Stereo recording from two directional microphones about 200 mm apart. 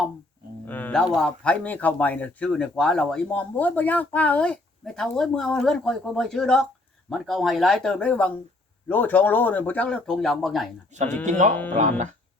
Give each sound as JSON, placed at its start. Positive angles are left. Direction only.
{"t": 0.7, "sound": "speech", "side_deg": 10}
{"t": 10.9, "sound": "speech", "side_deg": -35}